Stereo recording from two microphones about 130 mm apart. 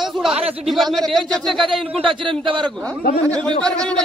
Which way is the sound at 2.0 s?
40° right (ahead or behind).